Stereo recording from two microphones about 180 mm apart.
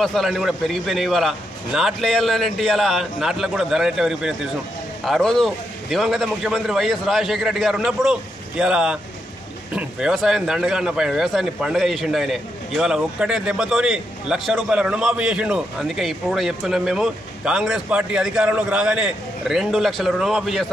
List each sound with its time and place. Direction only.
0.0 s a man's voice: centre (ahead or behind)